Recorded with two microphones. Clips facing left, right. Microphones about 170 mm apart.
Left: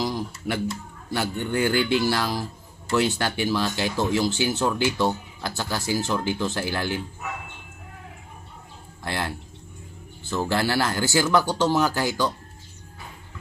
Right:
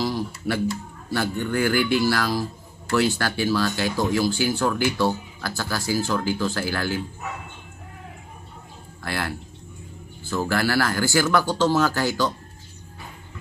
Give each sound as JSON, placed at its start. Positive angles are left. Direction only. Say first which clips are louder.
{"t": 0.0, "sound": "a sound", "louder": "right 2 dB", "side_deg": 20}
{"t": 1.1, "sound": "speech", "louder": "right 1 dB", "side_deg": 20}
{"t": 9.0, "sound": "speech", "louder": "even", "side_deg": 20}
{"t": 10.3, "sound": "speech", "louder": "right 1 dB", "side_deg": 20}